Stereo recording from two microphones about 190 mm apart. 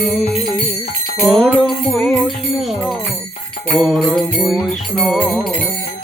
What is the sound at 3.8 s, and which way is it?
Music, centre (ahead or behind).